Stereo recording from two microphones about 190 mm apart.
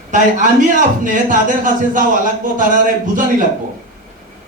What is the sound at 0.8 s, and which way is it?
A man's voice, 45° right (ahead or behind).